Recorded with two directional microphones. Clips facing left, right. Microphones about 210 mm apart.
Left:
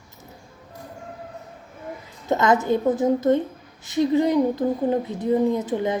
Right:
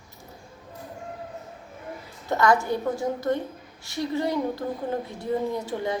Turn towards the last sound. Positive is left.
turn(degrees=20)  # may be behind; listen again after turning